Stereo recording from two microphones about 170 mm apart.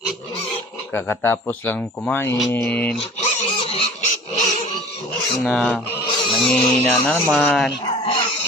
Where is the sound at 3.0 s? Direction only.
40° left (ahead or behind).